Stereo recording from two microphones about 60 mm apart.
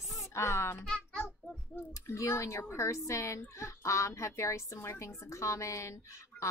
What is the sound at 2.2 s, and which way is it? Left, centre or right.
Speech, left.